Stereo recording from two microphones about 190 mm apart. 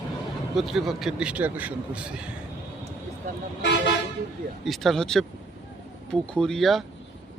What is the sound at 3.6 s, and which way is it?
Toot, 70° left (ahead or behind).